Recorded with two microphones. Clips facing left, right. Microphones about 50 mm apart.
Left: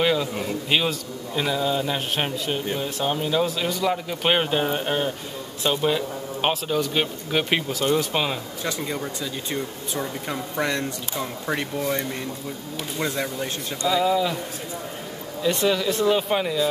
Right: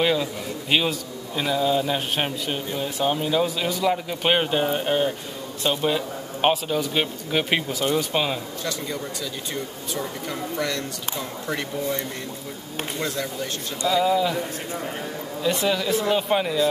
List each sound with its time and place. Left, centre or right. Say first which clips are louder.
0.0 s a man's voice: even; centre
10.5 s speech: left 3 dB; left
13.0 s speech: left 3 dB; left
13.8 s a man's voice: right 1 dB; centre
15.4 s a man's voice: left 1 dB; centre